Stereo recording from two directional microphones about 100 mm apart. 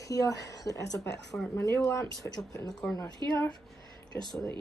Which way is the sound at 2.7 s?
Centre (ahead or behind).